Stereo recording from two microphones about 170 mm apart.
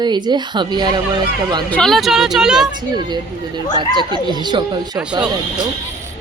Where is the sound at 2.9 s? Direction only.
25° right (ahead or behind).